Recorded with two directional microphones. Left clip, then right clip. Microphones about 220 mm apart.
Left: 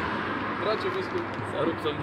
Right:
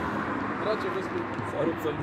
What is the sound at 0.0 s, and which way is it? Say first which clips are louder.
Vehicle: left 1 dB; 55° right (ahead or behind).